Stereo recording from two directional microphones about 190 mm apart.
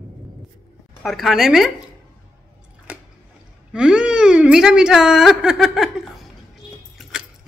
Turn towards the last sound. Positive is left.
turn(degrees=0)  # may be behind; listen again after turning